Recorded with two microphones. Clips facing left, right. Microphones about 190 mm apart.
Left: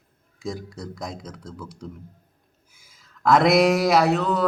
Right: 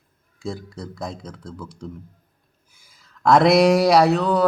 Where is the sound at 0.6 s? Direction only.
30° right (ahead or behind).